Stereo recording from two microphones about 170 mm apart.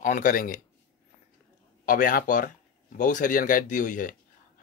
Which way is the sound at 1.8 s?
55° left (ahead or behind).